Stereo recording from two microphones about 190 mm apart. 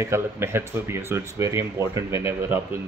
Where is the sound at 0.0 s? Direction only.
15° right (ahead or behind).